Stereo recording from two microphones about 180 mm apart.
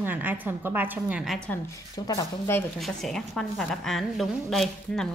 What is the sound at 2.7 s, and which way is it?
A woman's voice, centre (ahead or behind).